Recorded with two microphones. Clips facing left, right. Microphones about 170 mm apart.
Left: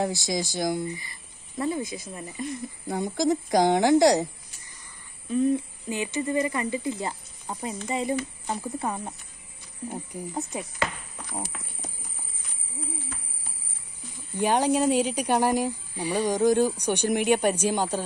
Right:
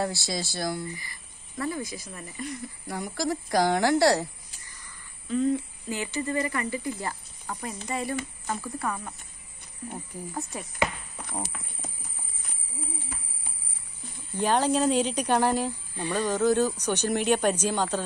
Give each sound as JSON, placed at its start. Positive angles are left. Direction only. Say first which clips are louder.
{"t": 0.0, "sound": "speech", "louder": "left 3 dB", "side_deg": 20}
{"t": 5.3, "sound": "speech", "louder": "left 2 dB", "side_deg": 15}
{"t": 10.1, "sound": "speech", "louder": "left 3 dB", "side_deg": 15}
{"t": 14.4, "sound": "speech", "louder": "left 1 dB", "side_deg": 10}